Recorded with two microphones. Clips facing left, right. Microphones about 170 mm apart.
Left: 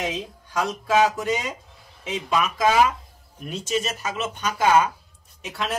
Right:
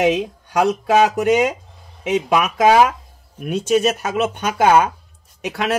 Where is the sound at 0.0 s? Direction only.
70° right (ahead or behind).